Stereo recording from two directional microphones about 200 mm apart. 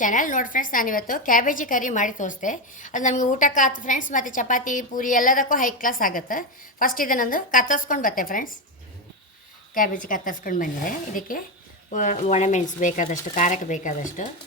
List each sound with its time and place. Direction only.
0.0 s a woman's voice: 40° left (ahead or behind)
9.7 s a woman's voice: 45° left (ahead or behind)